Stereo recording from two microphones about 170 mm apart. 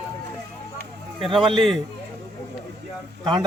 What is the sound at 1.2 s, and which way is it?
Speech, 30° right (ahead or behind).